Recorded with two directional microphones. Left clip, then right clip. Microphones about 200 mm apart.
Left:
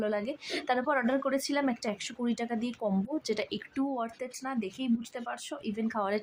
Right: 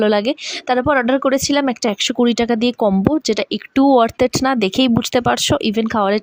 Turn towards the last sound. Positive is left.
turn(degrees=-40)  # may be behind; listen again after turning